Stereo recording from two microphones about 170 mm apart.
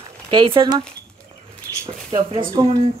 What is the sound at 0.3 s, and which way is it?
Speech, 25° right (ahead or behind).